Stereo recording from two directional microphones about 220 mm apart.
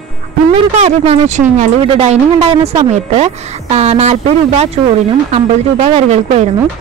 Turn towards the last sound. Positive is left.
turn(degrees=-30)  # may be behind; listen again after turning